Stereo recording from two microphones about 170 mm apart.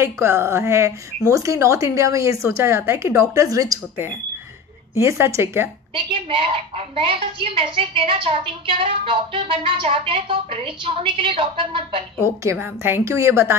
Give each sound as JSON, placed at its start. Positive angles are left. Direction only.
{"t": 0.0, "sound": "a woman's voice", "side_deg": -15}
{"t": 4.9, "sound": "a woman's voice", "side_deg": -15}
{"t": 5.9, "sound": "a woman's voice", "side_deg": -30}
{"t": 12.4, "sound": "a woman's voice", "side_deg": -10}